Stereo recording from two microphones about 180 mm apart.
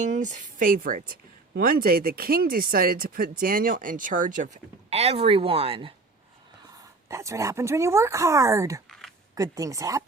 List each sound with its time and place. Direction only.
0.0 s speech: 45° right (ahead or behind)
7.1 s speech: 15° right (ahead or behind)
8.9 s a sound: centre (ahead or behind)
9.3 s speech: 20° right (ahead or behind)